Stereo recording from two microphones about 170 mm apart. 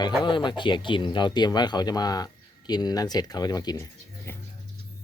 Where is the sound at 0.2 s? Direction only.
30° left (ahead or behind).